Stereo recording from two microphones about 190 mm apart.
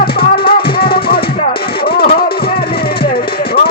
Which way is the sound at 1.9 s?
55° left (ahead or behind).